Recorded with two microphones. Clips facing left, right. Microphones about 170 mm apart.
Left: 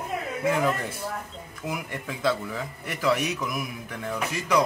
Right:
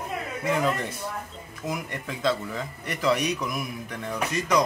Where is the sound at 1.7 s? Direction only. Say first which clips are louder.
Right 1 dB; 5° left (ahead or behind).